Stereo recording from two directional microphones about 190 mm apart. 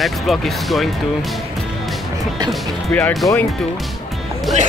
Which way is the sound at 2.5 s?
5° left (ahead or behind).